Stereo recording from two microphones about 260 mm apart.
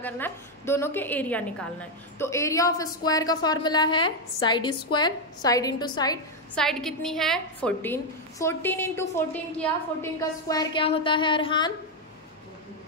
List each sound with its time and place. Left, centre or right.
0.0 s a woman's voice: centre
6.5 s a woman's voice: centre